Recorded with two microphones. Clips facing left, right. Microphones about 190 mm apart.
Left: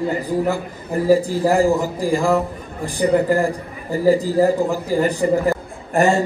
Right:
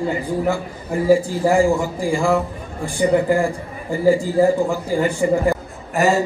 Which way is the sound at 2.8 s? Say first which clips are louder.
Even; 35° left (ahead or behind).